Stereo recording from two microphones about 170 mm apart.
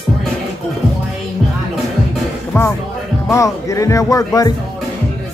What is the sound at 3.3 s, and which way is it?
Speech, 20° left (ahead or behind).